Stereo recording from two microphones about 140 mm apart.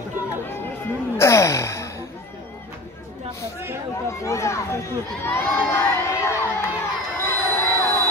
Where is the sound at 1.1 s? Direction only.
20° left (ahead or behind).